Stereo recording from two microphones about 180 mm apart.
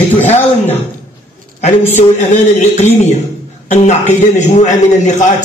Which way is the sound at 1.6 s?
40° left (ahead or behind).